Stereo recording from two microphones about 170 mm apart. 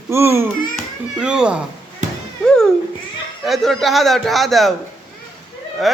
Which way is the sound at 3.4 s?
Centre (ahead or behind).